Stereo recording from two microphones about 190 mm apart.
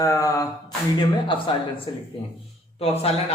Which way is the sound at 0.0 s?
15° left (ahead or behind).